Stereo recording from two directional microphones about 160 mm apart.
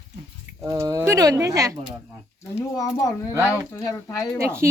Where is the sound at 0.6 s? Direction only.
20° right (ahead or behind).